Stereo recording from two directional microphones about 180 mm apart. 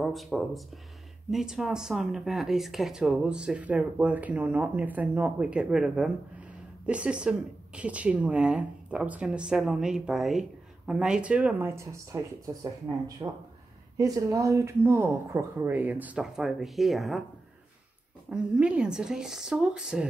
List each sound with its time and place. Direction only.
0.0 s speech: centre (ahead or behind)
18.3 s speech: 5° right (ahead or behind)